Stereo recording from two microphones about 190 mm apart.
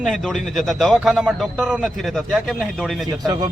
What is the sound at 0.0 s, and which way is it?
A man's voice, centre (ahead or behind).